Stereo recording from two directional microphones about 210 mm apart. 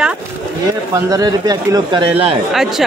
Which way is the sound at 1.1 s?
15° right (ahead or behind).